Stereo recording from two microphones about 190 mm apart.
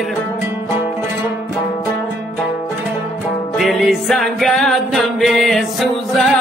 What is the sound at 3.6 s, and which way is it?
Music, centre (ahead or behind).